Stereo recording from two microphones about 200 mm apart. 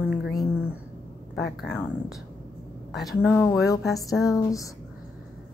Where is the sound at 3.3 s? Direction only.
15° left (ahead or behind).